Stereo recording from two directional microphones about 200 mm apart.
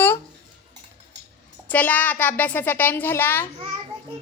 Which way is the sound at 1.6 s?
10° left (ahead or behind).